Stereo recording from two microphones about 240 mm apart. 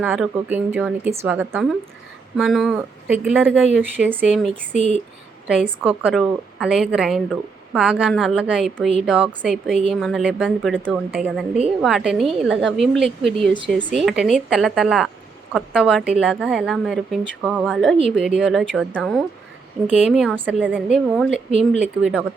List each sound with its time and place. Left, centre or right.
0.0 s speech: centre
4.7 s speech: left
5.8 s speech: centre